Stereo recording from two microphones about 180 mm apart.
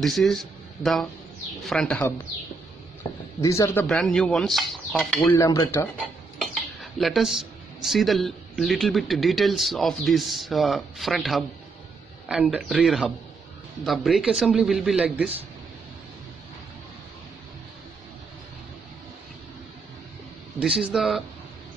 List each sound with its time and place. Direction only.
0.0 s speech: centre (ahead or behind)
1.7 s cutlery: 5° left (ahead or behind)
3.4 s cutlery: 15° left (ahead or behind)
3.8 s cutlery: centre (ahead or behind)
5.2 s cutlery: 15° left (ahead or behind)
6.3 s speech: centre (ahead or behind)
12.3 s cutlery: 5° right (ahead or behind)
20.5 s cutlery: 5° right (ahead or behind)